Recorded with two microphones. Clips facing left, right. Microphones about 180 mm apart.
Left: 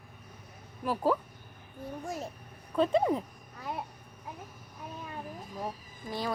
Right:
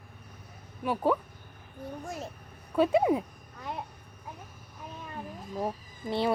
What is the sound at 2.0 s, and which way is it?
A child's voice, centre (ahead or behind).